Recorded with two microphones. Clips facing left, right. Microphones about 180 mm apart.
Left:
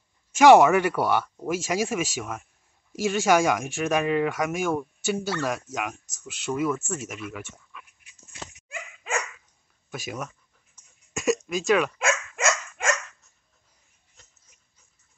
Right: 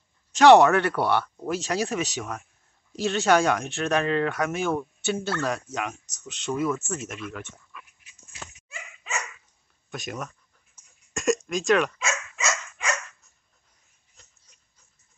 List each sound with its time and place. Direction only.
0.3 s speech: 10° left (ahead or behind)
6.9 s pant: 5° left (ahead or behind)
8.6 s dog: 55° left (ahead or behind)
9.8 s speech: 5° left (ahead or behind)
10.8 s a sound: 10° right (ahead or behind)
11.1 s speech: 5° left (ahead or behind)
12.0 s dog: 55° left (ahead or behind)